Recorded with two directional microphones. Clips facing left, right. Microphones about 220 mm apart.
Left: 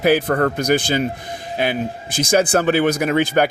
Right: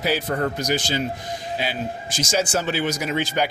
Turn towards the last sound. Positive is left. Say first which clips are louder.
# left 7 dB
turn(degrees=55)  # may be behind; listen again after turning